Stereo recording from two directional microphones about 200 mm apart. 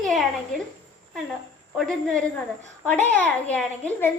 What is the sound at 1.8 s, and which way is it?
A woman's voice, 5° left (ahead or behind).